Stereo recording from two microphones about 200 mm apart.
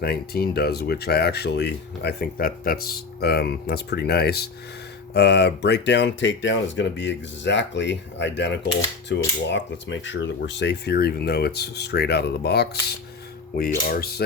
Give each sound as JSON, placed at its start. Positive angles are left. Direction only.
{"t": 0.0, "sound": "speech", "side_deg": 50}